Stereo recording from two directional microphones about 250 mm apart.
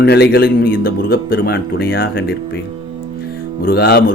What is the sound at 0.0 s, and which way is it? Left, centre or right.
Speech, left.